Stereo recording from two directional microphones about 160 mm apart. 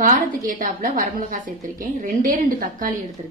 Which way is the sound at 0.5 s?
55° right (ahead or behind).